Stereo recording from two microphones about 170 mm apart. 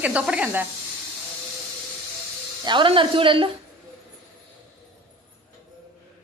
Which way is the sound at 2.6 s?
30° right (ahead or behind).